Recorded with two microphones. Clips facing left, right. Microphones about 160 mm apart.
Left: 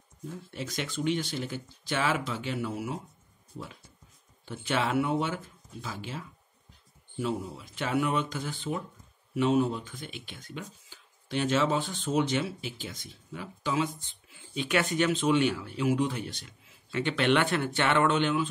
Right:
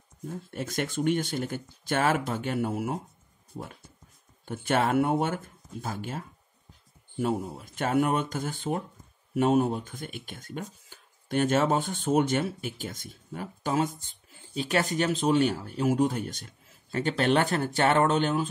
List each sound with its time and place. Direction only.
0.3 s speech: 50° right (ahead or behind)
4.5 s speech: 50° right (ahead or behind)